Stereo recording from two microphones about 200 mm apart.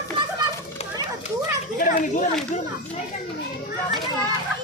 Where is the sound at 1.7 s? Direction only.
45° left (ahead or behind).